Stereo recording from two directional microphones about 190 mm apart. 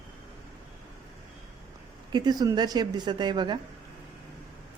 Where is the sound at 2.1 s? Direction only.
20° right (ahead or behind).